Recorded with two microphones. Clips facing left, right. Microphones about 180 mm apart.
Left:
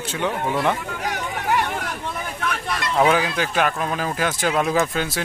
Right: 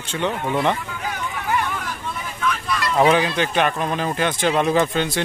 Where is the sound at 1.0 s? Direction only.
70° left (ahead or behind).